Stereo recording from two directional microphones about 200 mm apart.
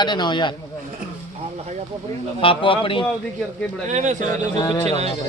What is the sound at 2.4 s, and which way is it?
Speech, 25° left (ahead or behind).